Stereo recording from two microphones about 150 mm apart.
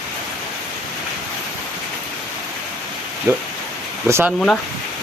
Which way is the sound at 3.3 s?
15° right (ahead or behind).